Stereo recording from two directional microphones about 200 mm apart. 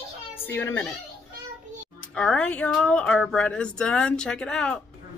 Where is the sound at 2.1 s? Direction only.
5° left (ahead or behind).